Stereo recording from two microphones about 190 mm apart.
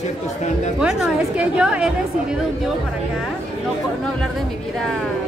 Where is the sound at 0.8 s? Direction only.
5° right (ahead or behind).